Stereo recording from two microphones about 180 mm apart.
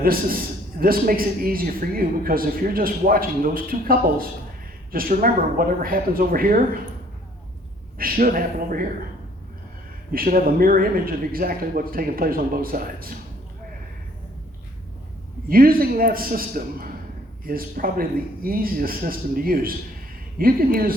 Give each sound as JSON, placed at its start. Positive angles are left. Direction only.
{"t": 0.0, "sound": "a man's voice", "side_deg": -55}
{"t": 7.9, "sound": "a man's voice", "side_deg": -55}
{"t": 10.1, "sound": "a man's voice", "side_deg": -50}
{"t": 15.4, "sound": "a man's voice", "side_deg": -55}